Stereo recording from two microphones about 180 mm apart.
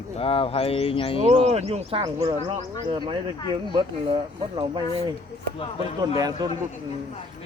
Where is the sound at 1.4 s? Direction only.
35° right (ahead or behind).